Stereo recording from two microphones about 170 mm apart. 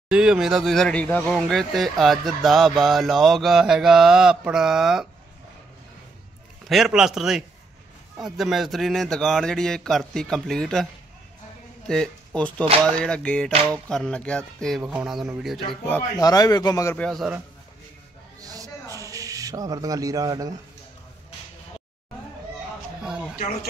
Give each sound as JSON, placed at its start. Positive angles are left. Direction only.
{"t": 0.1, "sound": "speech", "side_deg": -5}
{"t": 6.7, "sound": "speech", "side_deg": 0}
{"t": 12.4, "sound": "speech", "side_deg": 5}
{"t": 14.8, "sound": "speech", "side_deg": -10}
{"t": 16.2, "sound": "speech", "side_deg": 20}
{"t": 16.9, "sound": "speech", "side_deg": 5}
{"t": 18.4, "sound": "owl", "side_deg": -20}